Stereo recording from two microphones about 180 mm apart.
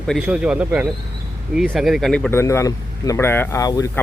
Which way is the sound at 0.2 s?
5° right (ahead or behind).